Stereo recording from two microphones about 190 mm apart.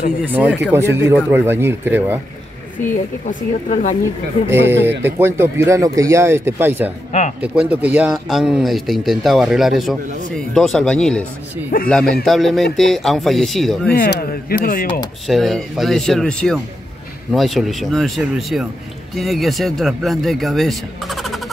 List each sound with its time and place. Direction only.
0.2 s speech: 10° right (ahead or behind)
2.9 s speech: 40° left (ahead or behind)
4.8 s speech: 10° right (ahead or behind)
7.1 s speech: 40° left (ahead or behind)
7.3 s speech: 5° right (ahead or behind)
11.7 s speech: 45° left (ahead or behind)
12.3 s speech: centre (ahead or behind)
13.9 s speech: 50° left (ahead or behind)
15.2 s speech: centre (ahead or behind)